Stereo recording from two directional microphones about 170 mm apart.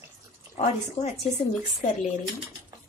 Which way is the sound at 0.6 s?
40° left (ahead or behind).